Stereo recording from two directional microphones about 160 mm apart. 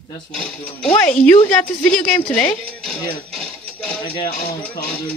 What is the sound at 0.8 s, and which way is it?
Speech, 10° left (ahead or behind).